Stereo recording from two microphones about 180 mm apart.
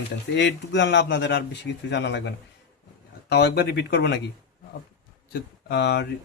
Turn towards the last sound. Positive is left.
turn(degrees=70)  # may be behind; listen again after turning